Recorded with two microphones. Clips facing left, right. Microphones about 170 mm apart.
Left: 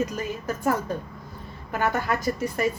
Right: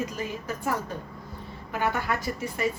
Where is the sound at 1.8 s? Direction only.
40° left (ahead or behind).